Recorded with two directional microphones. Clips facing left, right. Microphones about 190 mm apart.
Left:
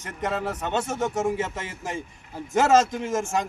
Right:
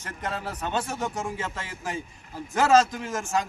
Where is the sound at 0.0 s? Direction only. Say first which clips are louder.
Left 5 dB; 20° left (ahead or behind).